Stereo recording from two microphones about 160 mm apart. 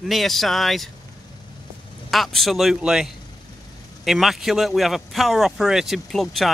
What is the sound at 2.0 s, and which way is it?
Speech, centre (ahead or behind).